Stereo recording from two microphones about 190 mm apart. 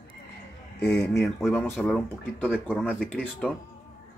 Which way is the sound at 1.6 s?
5° left (ahead or behind).